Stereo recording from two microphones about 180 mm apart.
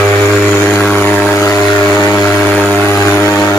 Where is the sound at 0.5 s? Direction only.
10° left (ahead or behind).